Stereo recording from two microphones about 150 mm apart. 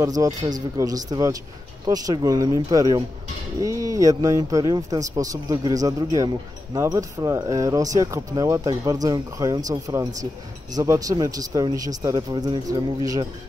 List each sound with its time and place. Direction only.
0.0 s a man's voice: 25° right (ahead or behind)